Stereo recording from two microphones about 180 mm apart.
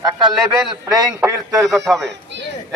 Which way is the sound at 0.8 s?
20° right (ahead or behind).